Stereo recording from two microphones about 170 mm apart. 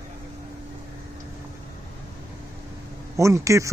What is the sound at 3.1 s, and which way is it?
Speech, 20° right (ahead or behind).